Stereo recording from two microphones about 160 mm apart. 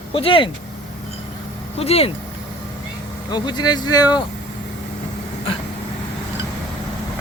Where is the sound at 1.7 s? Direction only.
40° left (ahead or behind).